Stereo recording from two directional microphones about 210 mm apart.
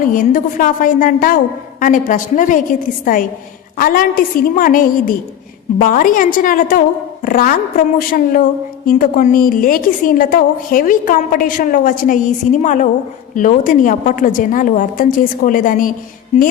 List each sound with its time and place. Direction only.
0.0 s a woman's voice: 40° left (ahead or behind)